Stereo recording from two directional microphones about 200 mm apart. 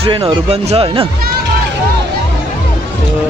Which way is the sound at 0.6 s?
30° right (ahead or behind).